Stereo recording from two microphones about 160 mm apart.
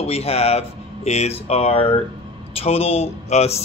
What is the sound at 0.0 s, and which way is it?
A man's voice, 40° left (ahead or behind).